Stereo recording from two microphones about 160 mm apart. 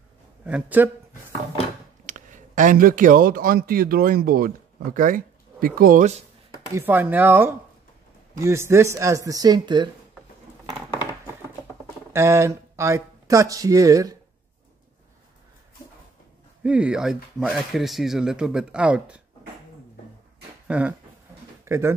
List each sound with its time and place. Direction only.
0.5 s speech: 10° right (ahead or behind)
2.0 s speech: 50° right (ahead or behind); by 4.5 s 70° right (ahead or behind)
4.9 s a sound: 60° right (ahead or behind)
5.8 s speech: 60° right (ahead or behind)
6.7 s speech: 15° right (ahead or behind)
12.1 s speech: 15° right (ahead or behind)
16.6 s speech: 5° right (ahead or behind)
20.6 s speech: 10° right (ahead or behind)